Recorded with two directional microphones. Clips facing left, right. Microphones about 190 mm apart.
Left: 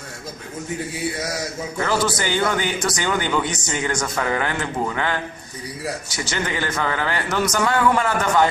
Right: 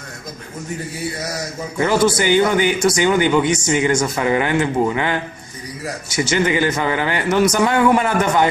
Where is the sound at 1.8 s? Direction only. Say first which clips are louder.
Right 6 dB; 10° right (ahead or behind).